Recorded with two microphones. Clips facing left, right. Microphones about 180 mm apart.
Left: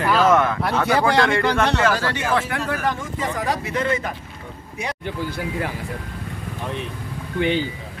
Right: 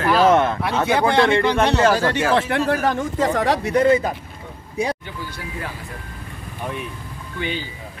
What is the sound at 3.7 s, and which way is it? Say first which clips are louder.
Speech: right 10 dB; 35° right (ahead or behind).